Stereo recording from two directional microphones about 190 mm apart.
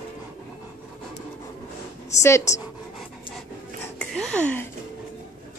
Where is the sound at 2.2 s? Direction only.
15° left (ahead or behind).